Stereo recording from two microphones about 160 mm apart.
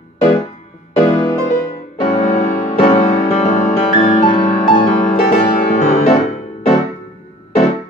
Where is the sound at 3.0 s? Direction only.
45° left (ahead or behind).